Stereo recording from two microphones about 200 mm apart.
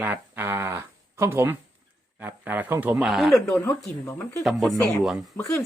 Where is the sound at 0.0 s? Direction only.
10° right (ahead or behind).